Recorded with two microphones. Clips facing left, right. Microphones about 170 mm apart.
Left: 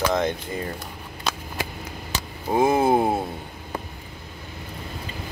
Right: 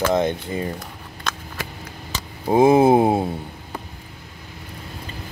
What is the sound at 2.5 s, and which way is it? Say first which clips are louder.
Speech: right 5 dB; 25° right (ahead or behind).